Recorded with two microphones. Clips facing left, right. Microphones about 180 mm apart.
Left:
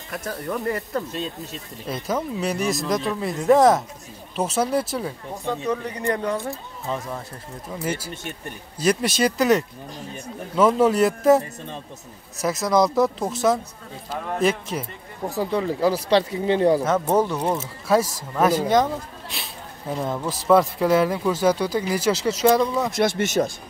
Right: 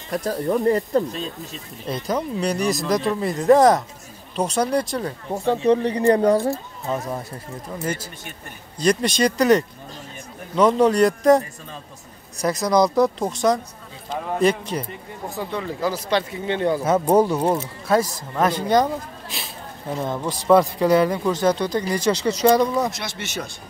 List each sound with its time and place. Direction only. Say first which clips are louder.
0.1 s speech: right 7 dB; 30° right (ahead or behind)
1.5 s speech: right 2 dB; 5° left (ahead or behind)
5.3 s speech: right 8 dB; 30° right (ahead or behind)
8.7 s speech: right 2 dB; 5° left (ahead or behind)
15.2 s speech: left 5 dB; 35° left (ahead or behind)
16.8 s speech: right 3 dB; 10° right (ahead or behind)
17.6 s speech: even; 5° left (ahead or behind)
22.9 s speech: left 10 dB; 50° left (ahead or behind)